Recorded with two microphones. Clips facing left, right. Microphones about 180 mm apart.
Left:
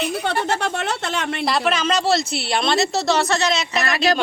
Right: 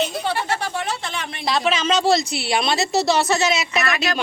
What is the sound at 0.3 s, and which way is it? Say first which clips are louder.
Speech: left 2 dB; 70° left (ahead or behind).